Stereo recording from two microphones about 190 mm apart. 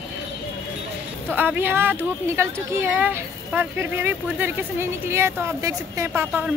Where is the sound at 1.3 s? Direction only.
10° right (ahead or behind).